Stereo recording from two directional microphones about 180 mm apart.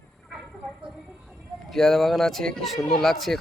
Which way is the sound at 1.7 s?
Centre (ahead or behind).